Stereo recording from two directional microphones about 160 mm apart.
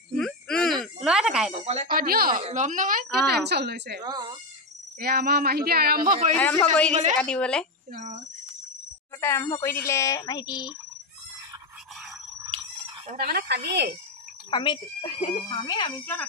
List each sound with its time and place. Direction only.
0.1 s a sound: 5° left (ahead or behind)
1.5 s speech: 40° right (ahead or behind)
1.9 s speech: 65° right (ahead or behind)
2.4 s a woman's voice: 50° right (ahead or behind); by 4.0 s 90° right
4.0 s speech: 25° right (ahead or behind)
5.0 s speech: 70° right (ahead or behind)
6.3 s a woman's voice: 10° left (ahead or behind)
6.9 s a woman's voice: 45° right (ahead or behind)
7.2 s a woman's voice: 5° left (ahead or behind)
7.9 s cricket: 50° right (ahead or behind)
9.2 s speech: 15° left (ahead or behind)
13.1 s speech: 65° right (ahead or behind); by 13.9 s 90° right
14.5 s speech: 30° left (ahead or behind)